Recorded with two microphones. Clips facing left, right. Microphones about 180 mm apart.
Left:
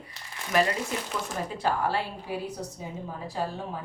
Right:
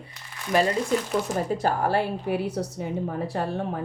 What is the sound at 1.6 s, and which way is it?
A woman's voice, 50° right (ahead or behind).